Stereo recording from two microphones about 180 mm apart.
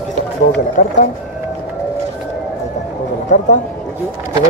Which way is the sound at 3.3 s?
45° left (ahead or behind).